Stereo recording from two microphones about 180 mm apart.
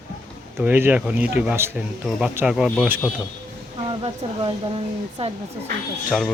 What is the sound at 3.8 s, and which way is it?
Speech, 30° right (ahead or behind).